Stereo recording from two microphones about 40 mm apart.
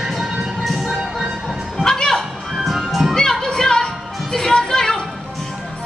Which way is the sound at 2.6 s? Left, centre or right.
Centre.